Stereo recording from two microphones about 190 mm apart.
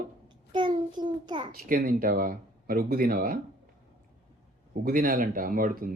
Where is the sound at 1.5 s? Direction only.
50° right (ahead or behind).